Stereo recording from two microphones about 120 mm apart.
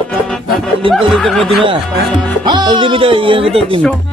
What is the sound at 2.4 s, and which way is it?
Speech, 40° right (ahead or behind).